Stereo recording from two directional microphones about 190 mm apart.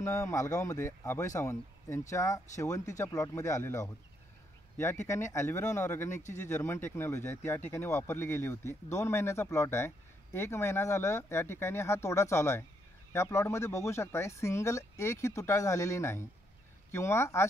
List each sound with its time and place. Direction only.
0.0 s speech: 15° left (ahead or behind)
5.0 s speech: 15° left (ahead or behind)